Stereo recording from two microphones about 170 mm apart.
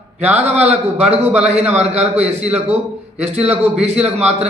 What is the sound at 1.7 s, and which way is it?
Speech, 40° right (ahead or behind).